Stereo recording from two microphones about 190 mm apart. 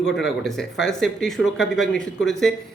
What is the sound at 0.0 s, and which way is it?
A man's voice, centre (ahead or behind).